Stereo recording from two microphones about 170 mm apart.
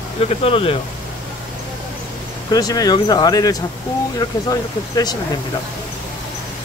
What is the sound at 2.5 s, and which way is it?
Speech, 20° left (ahead or behind).